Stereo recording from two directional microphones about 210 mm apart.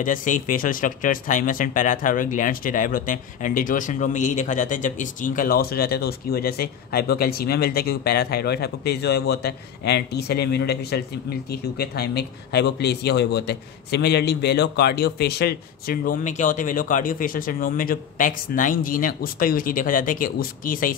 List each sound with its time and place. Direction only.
0.0 s speech: 40° left (ahead or behind)